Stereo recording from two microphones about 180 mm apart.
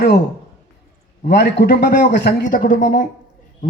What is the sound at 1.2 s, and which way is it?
A man's voice, 70° left (ahead or behind).